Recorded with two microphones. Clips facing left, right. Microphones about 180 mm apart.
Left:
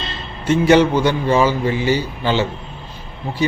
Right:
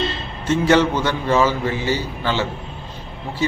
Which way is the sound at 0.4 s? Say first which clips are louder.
Left 3 dB; 15° left (ahead or behind).